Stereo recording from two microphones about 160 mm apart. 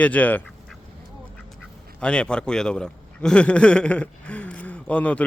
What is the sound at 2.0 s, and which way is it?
A man's voice, 5° left (ahead or behind).